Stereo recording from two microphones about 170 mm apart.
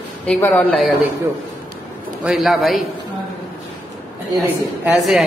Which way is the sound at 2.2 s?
Centre (ahead or behind).